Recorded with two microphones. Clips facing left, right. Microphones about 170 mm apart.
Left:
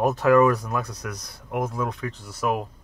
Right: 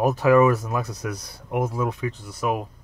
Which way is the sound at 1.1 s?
25° right (ahead or behind).